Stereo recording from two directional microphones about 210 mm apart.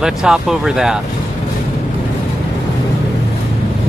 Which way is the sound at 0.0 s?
Centre (ahead or behind).